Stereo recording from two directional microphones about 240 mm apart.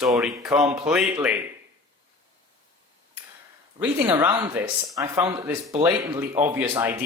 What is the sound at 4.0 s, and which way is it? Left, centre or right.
Speech, centre.